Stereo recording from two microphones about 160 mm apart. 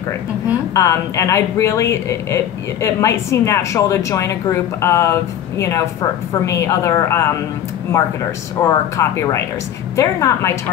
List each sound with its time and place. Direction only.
0.7 s speech: 20° left (ahead or behind)